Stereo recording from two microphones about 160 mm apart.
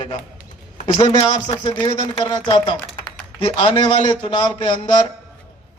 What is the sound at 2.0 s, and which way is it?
Speech, 25° left (ahead or behind).